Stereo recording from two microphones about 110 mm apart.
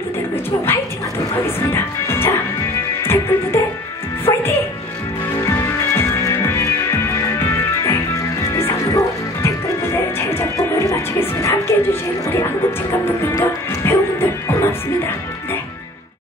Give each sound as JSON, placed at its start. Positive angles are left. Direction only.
{"t": 1.4, "sound": "music", "side_deg": 20}
{"t": 4.3, "sound": "music", "side_deg": 35}